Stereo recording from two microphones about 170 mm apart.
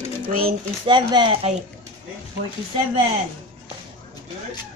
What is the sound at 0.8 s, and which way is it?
Speech, 25° right (ahead or behind).